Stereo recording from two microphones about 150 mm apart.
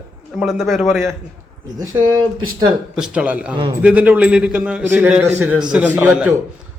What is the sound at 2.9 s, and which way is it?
A man's voice, 5° right (ahead or behind).